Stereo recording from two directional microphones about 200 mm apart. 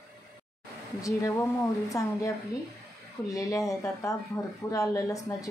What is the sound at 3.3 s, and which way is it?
Speech, 15° left (ahead or behind).